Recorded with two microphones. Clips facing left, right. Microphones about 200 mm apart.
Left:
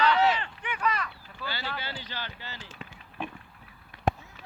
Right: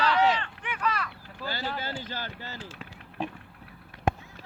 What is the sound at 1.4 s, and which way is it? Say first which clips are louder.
Speech: right 3 dB; 40° right (ahead or behind).